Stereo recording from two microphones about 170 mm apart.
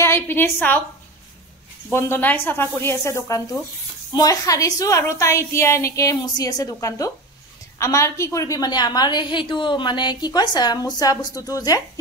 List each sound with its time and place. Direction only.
0.0 s a woman's voice: 15° left (ahead or behind)
1.9 s a woman's voice: 15° left (ahead or behind)